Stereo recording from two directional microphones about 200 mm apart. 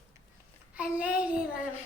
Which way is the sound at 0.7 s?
5° right (ahead or behind).